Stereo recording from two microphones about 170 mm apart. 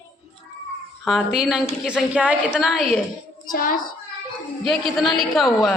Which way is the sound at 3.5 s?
55° left (ahead or behind).